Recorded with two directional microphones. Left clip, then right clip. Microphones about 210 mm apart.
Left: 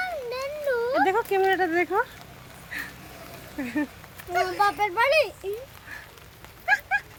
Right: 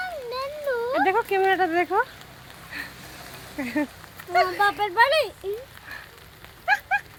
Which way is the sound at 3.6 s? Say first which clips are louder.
Right 2 dB; 15° right (ahead or behind).